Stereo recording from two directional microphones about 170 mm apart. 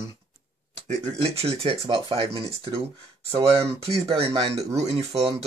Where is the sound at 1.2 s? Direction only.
35° right (ahead or behind).